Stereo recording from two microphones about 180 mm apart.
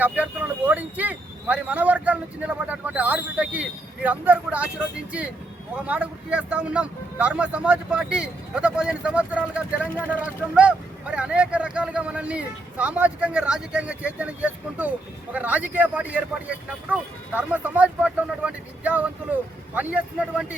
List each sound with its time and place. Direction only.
0.0 s speech: 10° right (ahead or behind)
5.7 s speech: 10° right (ahead or behind)